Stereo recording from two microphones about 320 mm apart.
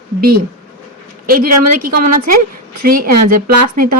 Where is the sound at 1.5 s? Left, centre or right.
Right.